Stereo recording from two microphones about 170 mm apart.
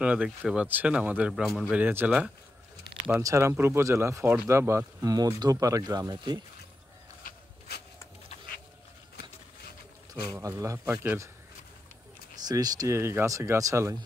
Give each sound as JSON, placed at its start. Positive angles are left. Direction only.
{"t": 0.0, "sound": "speech", "side_deg": -10}
{"t": 1.8, "sound": "speech", "side_deg": -10}
{"t": 7.2, "sound": "a sound", "side_deg": 65}
{"t": 10.3, "sound": "speech", "side_deg": -20}
{"t": 12.4, "sound": "speech", "side_deg": -20}